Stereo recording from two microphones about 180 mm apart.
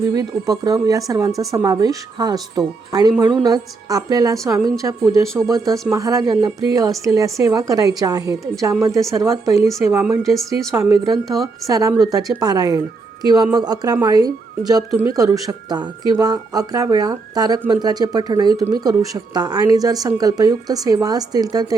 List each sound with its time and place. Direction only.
0.0 s a woman's voice: 20° right (ahead or behind); by 10.7 s centre (ahead or behind)
10.7 s a woman's voice: 15° right (ahead or behind)